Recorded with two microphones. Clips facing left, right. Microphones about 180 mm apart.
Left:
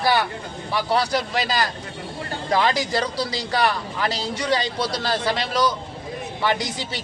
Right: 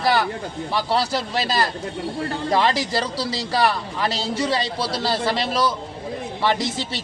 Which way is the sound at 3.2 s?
30° right (ahead or behind).